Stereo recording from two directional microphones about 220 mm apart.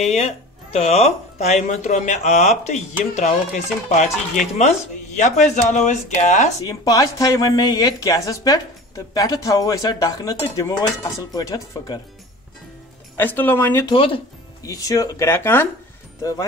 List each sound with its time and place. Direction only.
0.0 s speech: 30° left (ahead or behind)
6.6 s speech: 15° left (ahead or behind)
13.2 s speech: 10° left (ahead or behind)
13.9 s speech: 25° left (ahead or behind)